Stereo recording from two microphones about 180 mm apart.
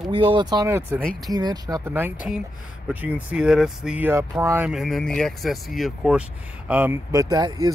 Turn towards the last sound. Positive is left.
turn(degrees=-20)  # may be behind; listen again after turning